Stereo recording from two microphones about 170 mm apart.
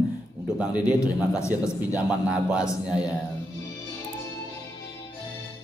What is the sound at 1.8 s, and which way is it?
Speech, 5° right (ahead or behind).